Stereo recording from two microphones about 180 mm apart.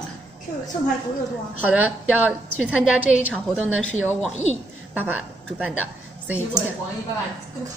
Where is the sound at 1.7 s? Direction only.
10° right (ahead or behind).